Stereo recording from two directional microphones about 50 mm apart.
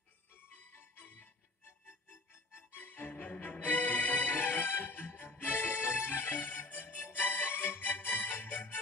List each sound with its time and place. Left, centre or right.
0.7 s music: left
2.5 s music: left